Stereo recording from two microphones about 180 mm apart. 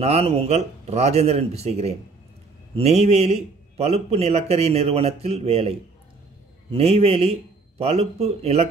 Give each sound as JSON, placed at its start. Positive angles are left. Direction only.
{"t": 0.0, "sound": "a man's voice", "side_deg": -35}